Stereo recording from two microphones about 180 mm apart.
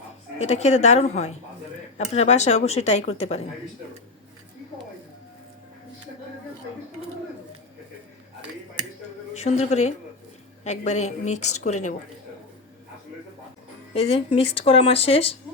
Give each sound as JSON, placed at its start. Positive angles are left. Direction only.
{"t": 0.3, "sound": "speech", "side_deg": 40}
{"t": 9.3, "sound": "a woman's voice", "side_deg": 40}
{"t": 13.9, "sound": "speech", "side_deg": 35}